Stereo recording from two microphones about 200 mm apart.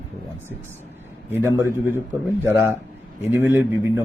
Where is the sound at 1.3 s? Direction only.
10° right (ahead or behind).